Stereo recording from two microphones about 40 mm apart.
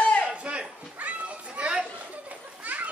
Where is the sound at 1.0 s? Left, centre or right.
Right.